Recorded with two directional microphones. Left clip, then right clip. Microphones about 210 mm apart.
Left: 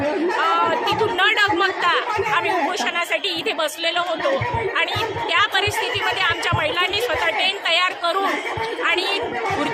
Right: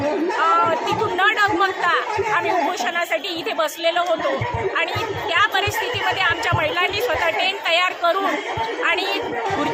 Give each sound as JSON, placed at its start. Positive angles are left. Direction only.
{"t": 1.2, "sound": "chatter", "side_deg": 15}
{"t": 3.6, "sound": "a woman's voice", "side_deg": 10}
{"t": 5.3, "sound": "a woman's voice", "side_deg": 5}